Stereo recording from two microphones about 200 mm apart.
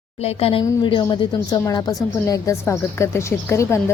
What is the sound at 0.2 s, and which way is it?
A woman's voice, 30° left (ahead or behind).